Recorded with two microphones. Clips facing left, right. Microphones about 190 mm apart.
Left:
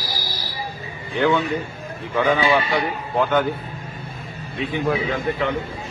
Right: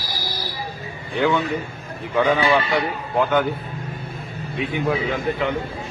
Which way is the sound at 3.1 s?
5° right (ahead or behind).